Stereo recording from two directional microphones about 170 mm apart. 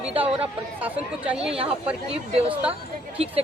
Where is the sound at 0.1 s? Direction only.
35° right (ahead or behind).